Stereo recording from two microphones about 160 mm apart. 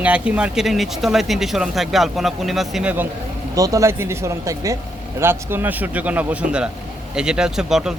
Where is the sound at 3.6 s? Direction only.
20° right (ahead or behind).